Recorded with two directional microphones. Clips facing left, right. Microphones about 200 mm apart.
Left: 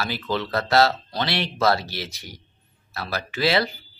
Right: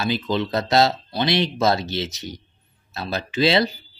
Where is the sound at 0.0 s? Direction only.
20° right (ahead or behind).